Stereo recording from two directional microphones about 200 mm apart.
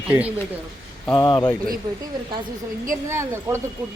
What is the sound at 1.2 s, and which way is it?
Speech, 20° left (ahead or behind).